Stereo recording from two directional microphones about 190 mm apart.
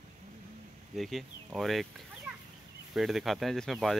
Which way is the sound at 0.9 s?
Centre (ahead or behind).